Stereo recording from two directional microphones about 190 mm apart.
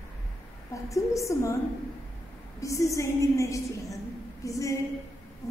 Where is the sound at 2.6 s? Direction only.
15° left (ahead or behind).